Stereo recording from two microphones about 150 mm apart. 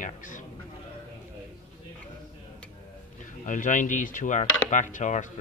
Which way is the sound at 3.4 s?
55° left (ahead or behind).